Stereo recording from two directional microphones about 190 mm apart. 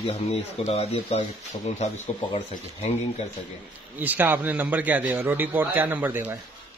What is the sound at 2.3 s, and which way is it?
Speech, 30° left (ahead or behind).